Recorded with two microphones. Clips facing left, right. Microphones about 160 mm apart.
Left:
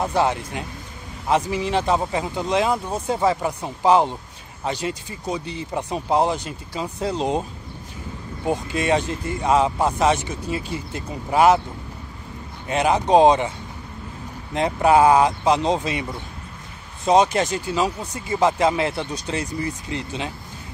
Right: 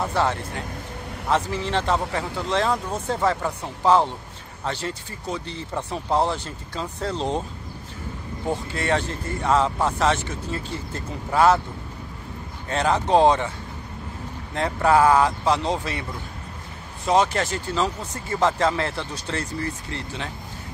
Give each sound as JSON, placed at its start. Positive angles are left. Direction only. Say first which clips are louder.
{"t": 0.0, "sound": "speech", "louder": "left 2 dB", "side_deg": 15}
{"t": 8.5, "sound": "speech", "louder": "left 3 dB", "side_deg": 15}
{"t": 12.6, "sound": "speech", "louder": "left 3 dB", "side_deg": 15}
{"t": 14.5, "sound": "speech", "louder": "left 3 dB", "side_deg": 15}